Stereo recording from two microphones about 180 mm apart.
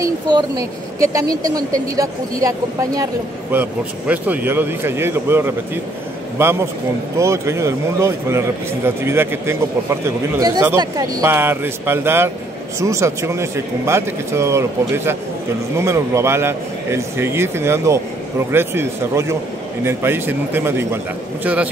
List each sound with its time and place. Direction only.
0.0 s a man's voice: 20° right (ahead or behind)